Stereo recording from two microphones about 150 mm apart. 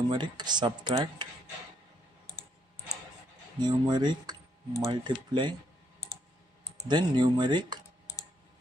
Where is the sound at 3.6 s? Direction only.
30° right (ahead or behind).